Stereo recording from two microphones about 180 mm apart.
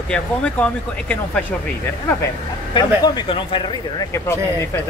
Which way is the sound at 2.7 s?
25° left (ahead or behind).